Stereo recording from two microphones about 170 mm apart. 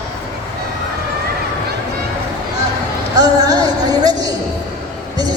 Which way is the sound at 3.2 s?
20° right (ahead or behind).